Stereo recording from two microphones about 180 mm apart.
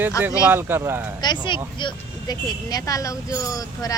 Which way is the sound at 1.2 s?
25° left (ahead or behind).